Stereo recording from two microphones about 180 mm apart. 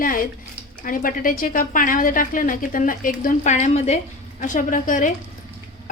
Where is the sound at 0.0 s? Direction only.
50° left (ahead or behind).